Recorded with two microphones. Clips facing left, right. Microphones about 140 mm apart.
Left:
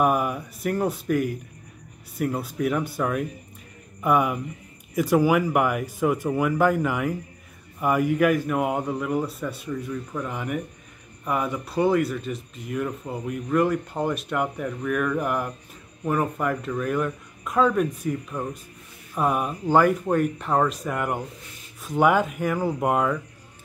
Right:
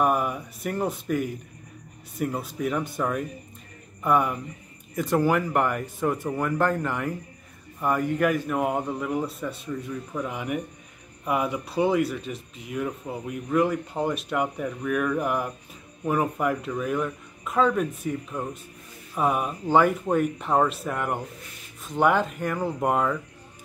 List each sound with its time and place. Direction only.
0.0 s speech: 5° left (ahead or behind)